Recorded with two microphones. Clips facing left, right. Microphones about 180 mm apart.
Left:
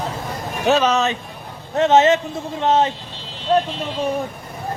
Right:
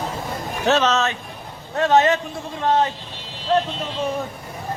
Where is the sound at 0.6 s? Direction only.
10° left (ahead or behind).